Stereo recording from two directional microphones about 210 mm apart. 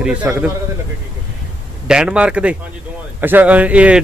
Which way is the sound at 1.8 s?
5° right (ahead or behind).